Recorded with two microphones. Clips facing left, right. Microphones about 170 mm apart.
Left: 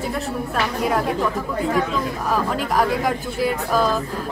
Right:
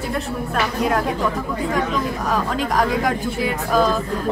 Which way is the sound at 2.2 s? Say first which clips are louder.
Left 1 dB; 5° left (ahead or behind).